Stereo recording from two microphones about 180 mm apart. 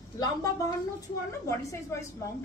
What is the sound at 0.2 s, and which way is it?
A woman's voice, 20° left (ahead or behind).